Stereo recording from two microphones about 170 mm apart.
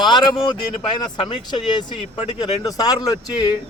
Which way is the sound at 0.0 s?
25° left (ahead or behind).